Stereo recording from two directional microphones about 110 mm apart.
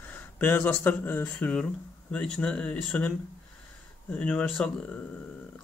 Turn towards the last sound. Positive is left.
turn(degrees=15)  # may be behind; listen again after turning